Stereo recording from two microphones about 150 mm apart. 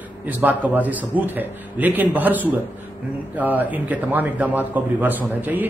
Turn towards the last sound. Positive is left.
turn(degrees=-10)  # may be behind; listen again after turning